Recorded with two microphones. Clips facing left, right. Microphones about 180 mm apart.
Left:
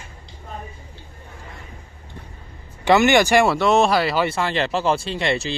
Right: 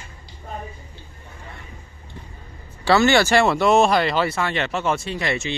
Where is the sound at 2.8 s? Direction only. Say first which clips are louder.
Left 1 dB; 15° left (ahead or behind).